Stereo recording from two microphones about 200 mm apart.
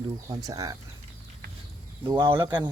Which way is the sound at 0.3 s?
20° right (ahead or behind).